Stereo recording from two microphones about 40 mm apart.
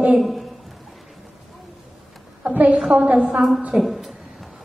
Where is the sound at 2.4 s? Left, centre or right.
Right.